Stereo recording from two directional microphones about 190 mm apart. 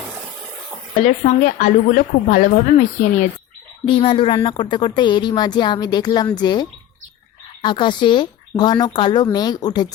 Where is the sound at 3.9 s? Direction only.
30° left (ahead or behind).